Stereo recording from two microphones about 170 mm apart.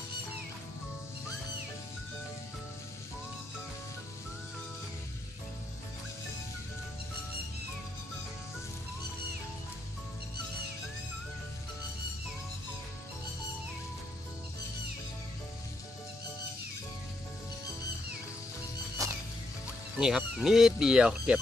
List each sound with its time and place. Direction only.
19.0 s music: 20° right (ahead or behind)
20.0 s speech: 5° right (ahead or behind)